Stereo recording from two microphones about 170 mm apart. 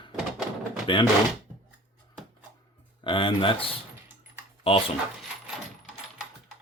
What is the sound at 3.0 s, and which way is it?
Speech, 30° left (ahead or behind).